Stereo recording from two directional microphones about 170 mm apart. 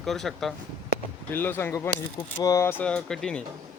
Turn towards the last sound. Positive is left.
turn(degrees=5)  # may be behind; listen again after turning